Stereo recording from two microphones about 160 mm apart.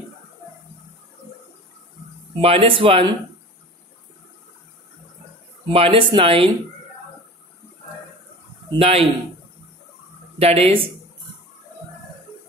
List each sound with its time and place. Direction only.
2.4 s speech: 35° right (ahead or behind)
5.7 s speech: 35° right (ahead or behind)
8.6 s a man's voice: 40° right (ahead or behind)
10.4 s speech: 40° right (ahead or behind)